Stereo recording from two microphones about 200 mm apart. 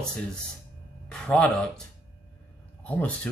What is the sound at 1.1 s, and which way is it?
Speech, 5° left (ahead or behind).